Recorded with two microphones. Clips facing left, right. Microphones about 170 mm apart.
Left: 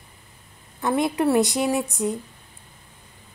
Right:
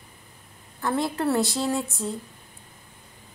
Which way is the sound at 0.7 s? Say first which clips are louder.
Left 4 dB; 20° left (ahead or behind).